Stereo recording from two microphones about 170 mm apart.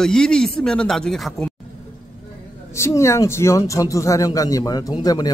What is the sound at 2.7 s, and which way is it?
Speech, 15° left (ahead or behind).